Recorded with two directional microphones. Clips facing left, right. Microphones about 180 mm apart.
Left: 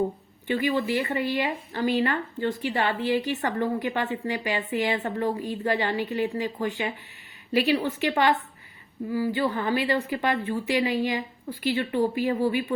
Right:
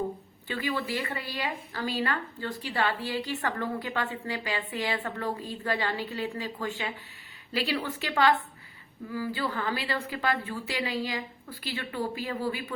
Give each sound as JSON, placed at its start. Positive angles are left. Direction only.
{"t": 0.4, "sound": "a woman's voice", "side_deg": 15}